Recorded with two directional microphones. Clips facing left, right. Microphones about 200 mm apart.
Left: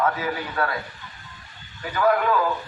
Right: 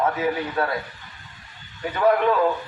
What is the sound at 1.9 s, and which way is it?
Speech, 25° right (ahead or behind).